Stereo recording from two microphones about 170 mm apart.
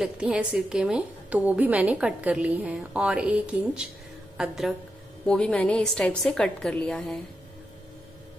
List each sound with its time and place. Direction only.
0.0 s a woman's voice: 5° right (ahead or behind)